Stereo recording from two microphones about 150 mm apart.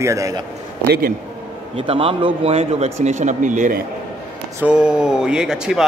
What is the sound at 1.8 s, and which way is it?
Speech, 40° right (ahead or behind).